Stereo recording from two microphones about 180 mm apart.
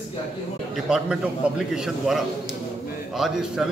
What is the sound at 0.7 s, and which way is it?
A man's voice, 5° right (ahead or behind).